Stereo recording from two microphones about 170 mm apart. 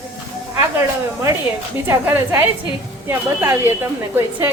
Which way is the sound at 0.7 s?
20° right (ahead or behind).